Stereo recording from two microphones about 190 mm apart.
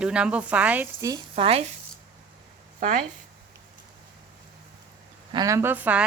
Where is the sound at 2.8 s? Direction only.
45° right (ahead or behind).